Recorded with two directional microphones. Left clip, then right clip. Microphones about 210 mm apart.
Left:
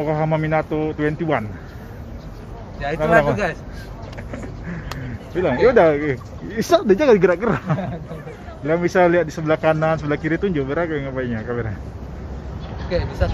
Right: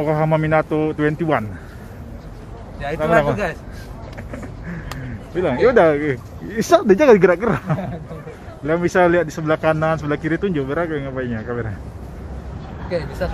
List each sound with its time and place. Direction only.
0.0 s speech: 30° right (ahead or behind)
2.8 s speech: centre (ahead or behind)
4.3 s a sound: 5° right (ahead or behind)
5.9 s speech: 15° right (ahead or behind)
7.3 s speech: 10° right (ahead or behind)
12.9 s speech: 5° right (ahead or behind)